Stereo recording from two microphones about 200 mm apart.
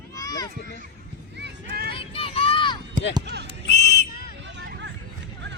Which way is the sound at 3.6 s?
55° left (ahead or behind).